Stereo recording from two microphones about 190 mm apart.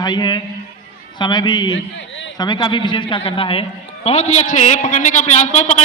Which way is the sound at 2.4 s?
25° left (ahead or behind).